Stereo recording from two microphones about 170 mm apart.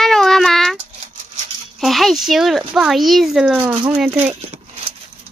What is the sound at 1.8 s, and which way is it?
Speech, centre (ahead or behind).